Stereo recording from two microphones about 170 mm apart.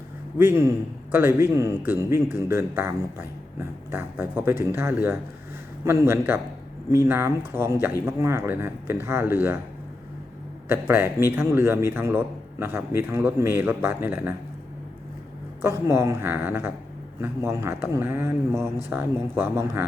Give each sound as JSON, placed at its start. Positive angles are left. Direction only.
{"t": 0.3, "sound": "speech", "side_deg": -15}
{"t": 10.7, "sound": "speech", "side_deg": -15}
{"t": 15.6, "sound": "speech", "side_deg": -15}